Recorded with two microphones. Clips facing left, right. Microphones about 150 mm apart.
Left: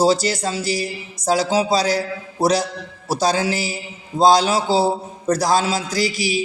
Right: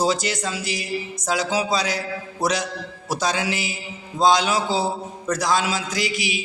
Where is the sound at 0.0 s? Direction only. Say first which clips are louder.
Left 5 dB; 35° left (ahead or behind).